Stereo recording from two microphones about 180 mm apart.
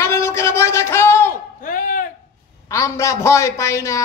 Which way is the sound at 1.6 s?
50° left (ahead or behind).